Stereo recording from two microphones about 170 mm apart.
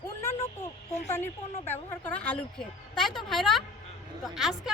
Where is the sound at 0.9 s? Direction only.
40° left (ahead or behind).